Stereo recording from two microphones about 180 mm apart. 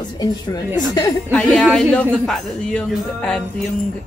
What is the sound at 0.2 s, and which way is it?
Speech, 20° left (ahead or behind).